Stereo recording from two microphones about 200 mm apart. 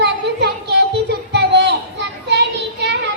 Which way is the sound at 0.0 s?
55° right (ahead or behind).